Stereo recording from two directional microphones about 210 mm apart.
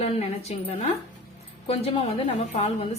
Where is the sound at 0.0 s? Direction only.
30° left (ahead or behind).